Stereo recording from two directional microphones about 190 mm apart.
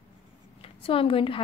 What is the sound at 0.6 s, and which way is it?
Speech, 30° left (ahead or behind).